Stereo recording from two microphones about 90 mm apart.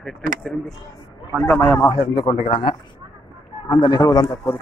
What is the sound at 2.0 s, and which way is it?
Speech, 80° left.